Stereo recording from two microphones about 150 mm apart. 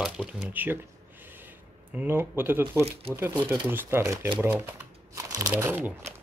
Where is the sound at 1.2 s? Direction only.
15° right (ahead or behind).